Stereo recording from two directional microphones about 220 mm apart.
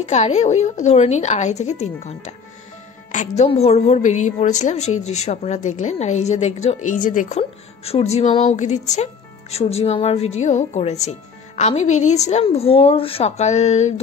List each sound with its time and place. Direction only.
0.0 s speech: 30° left (ahead or behind)